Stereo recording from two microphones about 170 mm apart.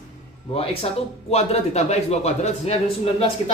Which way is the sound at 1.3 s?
40° left (ahead or behind).